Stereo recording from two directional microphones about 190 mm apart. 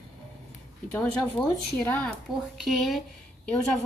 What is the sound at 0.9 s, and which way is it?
A woman's voice, 10° left (ahead or behind).